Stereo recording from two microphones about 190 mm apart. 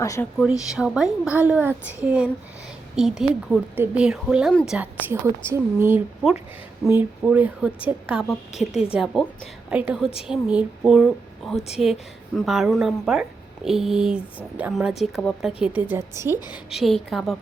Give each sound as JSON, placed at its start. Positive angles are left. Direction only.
{"t": 0.0, "sound": "speech", "side_deg": 15}
{"t": 0.8, "sound": "a woman's voice", "side_deg": -5}
{"t": 15.6, "sound": "a woman's voice", "side_deg": -10}
{"t": 16.6, "sound": "speech", "side_deg": 0}